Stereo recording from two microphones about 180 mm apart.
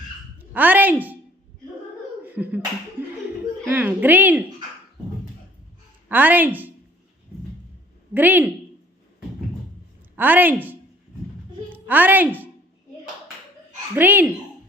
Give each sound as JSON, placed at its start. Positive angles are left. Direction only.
{"t": 0.5, "sound": "speech", "side_deg": -10}
{"t": 2.2, "sound": "speech", "side_deg": -10}
{"t": 3.7, "sound": "speech", "side_deg": -10}
{"t": 6.1, "sound": "speech", "side_deg": -10}
{"t": 8.1, "sound": "speech", "side_deg": -10}
{"t": 10.2, "sound": "a woman's voice", "side_deg": -10}
{"t": 13.9, "sound": "speech", "side_deg": -10}